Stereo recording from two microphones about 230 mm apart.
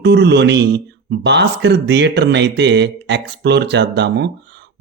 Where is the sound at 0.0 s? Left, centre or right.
Right.